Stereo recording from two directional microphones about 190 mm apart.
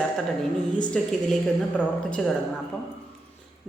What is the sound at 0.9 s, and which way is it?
Speech, 5° left (ahead or behind).